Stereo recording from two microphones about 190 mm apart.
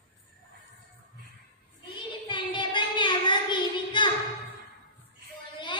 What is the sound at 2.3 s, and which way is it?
Child singing, 25° left (ahead or behind).